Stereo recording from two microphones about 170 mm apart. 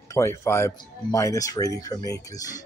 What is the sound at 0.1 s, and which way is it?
Speech, 15° left (ahead or behind).